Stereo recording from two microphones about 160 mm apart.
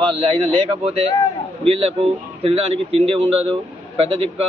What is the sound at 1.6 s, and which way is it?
A man's voice, 40° right (ahead or behind).